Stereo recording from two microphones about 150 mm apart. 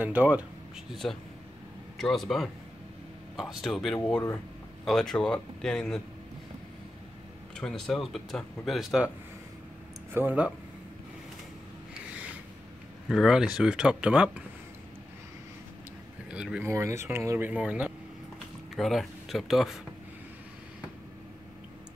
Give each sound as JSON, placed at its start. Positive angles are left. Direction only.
{"t": 0.0, "sound": "speech", "side_deg": -10}
{"t": 2.0, "sound": "speech", "side_deg": 0}
{"t": 7.5, "sound": "speech", "side_deg": 5}
{"t": 10.1, "sound": "speech", "side_deg": -10}
{"t": 13.1, "sound": "speech", "side_deg": -5}
{"t": 16.3, "sound": "speech", "side_deg": -5}
{"t": 16.6, "sound": "speech", "side_deg": -20}